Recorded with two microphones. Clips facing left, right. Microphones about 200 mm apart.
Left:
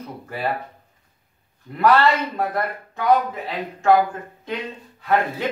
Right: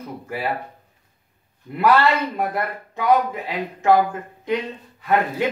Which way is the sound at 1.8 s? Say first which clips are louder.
Even; 10° right (ahead or behind).